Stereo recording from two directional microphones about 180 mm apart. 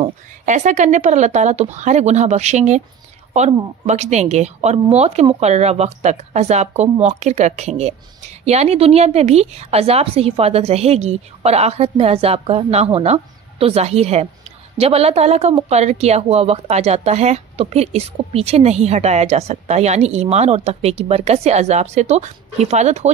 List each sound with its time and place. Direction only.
0.5 s speech: 40° right (ahead or behind)
3.8 s speech: 40° right (ahead or behind)